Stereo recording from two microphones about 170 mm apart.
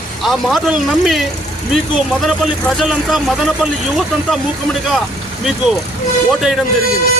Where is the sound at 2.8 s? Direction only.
Centre (ahead or behind).